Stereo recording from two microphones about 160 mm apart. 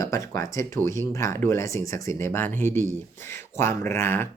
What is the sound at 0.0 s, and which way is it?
Speech, 20° left (ahead or behind).